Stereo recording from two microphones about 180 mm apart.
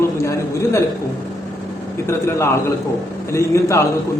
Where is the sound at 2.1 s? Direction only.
15° left (ahead or behind).